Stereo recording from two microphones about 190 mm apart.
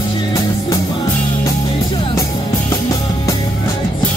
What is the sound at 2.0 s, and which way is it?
Music, 25° left (ahead or behind).